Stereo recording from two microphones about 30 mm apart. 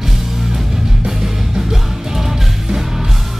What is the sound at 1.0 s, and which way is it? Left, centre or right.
Music, centre.